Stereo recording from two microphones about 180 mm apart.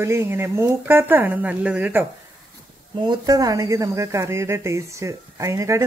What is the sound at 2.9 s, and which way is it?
Speech, 25° right (ahead or behind).